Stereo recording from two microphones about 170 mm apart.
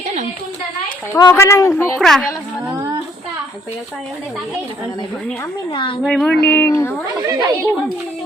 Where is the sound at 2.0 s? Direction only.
Centre (ahead or behind).